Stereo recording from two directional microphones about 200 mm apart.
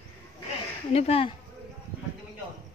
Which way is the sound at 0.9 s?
30° left (ahead or behind).